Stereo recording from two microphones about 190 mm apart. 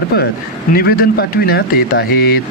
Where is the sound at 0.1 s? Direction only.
55° left (ahead or behind).